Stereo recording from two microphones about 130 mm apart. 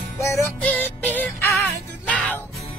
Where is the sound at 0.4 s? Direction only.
15° left (ahead or behind).